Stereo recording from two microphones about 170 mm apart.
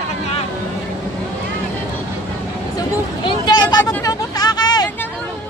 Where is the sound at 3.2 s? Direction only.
25° left (ahead or behind).